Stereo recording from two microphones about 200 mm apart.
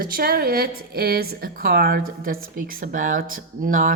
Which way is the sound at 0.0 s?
45° right (ahead or behind).